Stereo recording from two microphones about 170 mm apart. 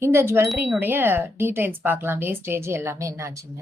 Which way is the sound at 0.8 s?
10° right (ahead or behind).